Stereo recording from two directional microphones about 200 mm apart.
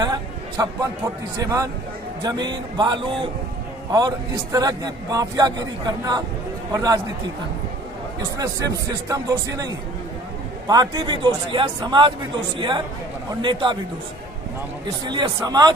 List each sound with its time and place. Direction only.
0.0 s a man's voice: 20° right (ahead or behind)
9.1 s a man's voice: 20° right (ahead or behind)
15.0 s a man's voice: 20° right (ahead or behind)